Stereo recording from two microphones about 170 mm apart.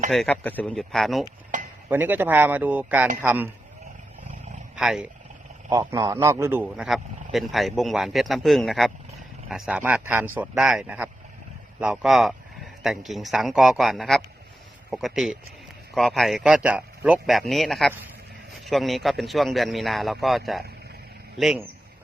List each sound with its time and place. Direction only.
0.1 s a man's voice: 5° left (ahead or behind)
1.5 s a sound: 45° right (ahead or behind)
1.9 s speech: 10° right (ahead or behind)
4.7 s speech: 5° right (ahead or behind)
5.8 s a man's voice: 15° right (ahead or behind)